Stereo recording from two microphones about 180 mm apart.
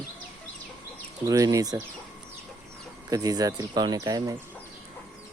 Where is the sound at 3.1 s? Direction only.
20° right (ahead or behind).